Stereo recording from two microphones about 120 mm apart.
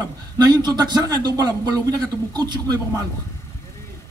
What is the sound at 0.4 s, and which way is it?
A man's voice, 35° right (ahead or behind).